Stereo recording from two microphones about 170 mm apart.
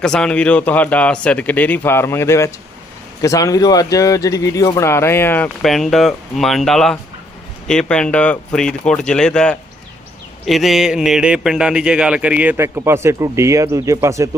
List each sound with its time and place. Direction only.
0.0 s a man's voice: 5° left (ahead or behind)
5.6 s a man's voice: centre (ahead or behind); by 14.3 s 15° right (ahead or behind)